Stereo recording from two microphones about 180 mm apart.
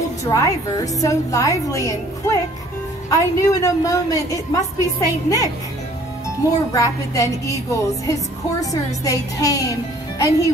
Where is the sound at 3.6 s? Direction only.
20° left (ahead or behind).